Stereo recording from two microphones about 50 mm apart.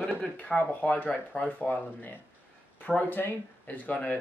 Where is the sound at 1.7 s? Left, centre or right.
Left.